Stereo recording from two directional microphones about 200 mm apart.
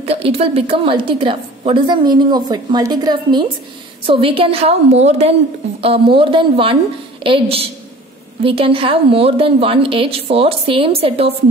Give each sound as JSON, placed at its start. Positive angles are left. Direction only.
{"t": 0.0, "sound": "a woman's voice", "side_deg": -30}